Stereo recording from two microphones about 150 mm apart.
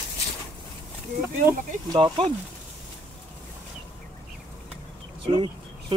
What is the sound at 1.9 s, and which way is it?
Speech, 35° right (ahead or behind).